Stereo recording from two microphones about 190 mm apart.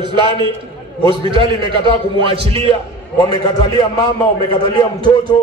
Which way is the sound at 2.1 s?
30° right (ahead or behind).